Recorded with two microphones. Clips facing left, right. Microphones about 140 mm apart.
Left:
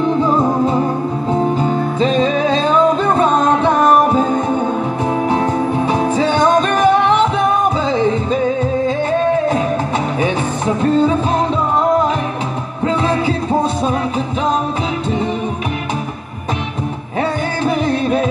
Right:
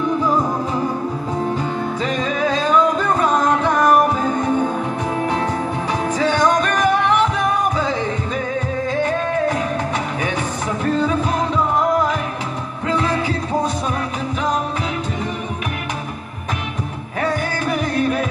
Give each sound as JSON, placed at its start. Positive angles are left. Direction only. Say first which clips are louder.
{"t": 0.1, "sound": "music", "louder": "left 4 dB", "side_deg": 25}
{"t": 6.1, "sound": "music", "louder": "left 2 dB", "side_deg": 25}
{"t": 10.8, "sound": "music", "louder": "left 5 dB", "side_deg": 25}
{"t": 12.8, "sound": "music", "louder": "left 4 dB", "side_deg": 25}
{"t": 17.2, "sound": "music", "louder": "left 3 dB", "side_deg": 25}